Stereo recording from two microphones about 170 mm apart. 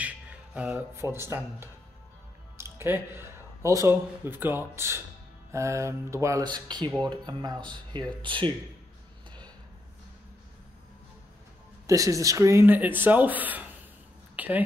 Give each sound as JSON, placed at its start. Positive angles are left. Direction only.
{"t": 0.0, "sound": "speech", "side_deg": -10}
{"t": 2.5, "sound": "music", "side_deg": -15}
{"t": 3.6, "sound": "speech", "side_deg": -20}
{"t": 11.9, "sound": "speech", "side_deg": -20}
{"t": 14.3, "sound": "a sound", "side_deg": -10}